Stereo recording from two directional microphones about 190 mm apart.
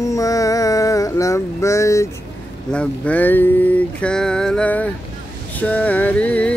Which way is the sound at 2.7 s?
5° left (ahead or behind).